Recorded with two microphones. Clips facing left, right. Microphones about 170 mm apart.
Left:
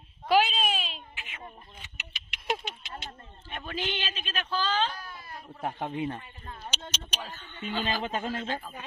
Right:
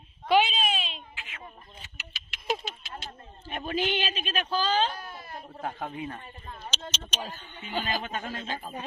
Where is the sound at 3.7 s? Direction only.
15° right (ahead or behind).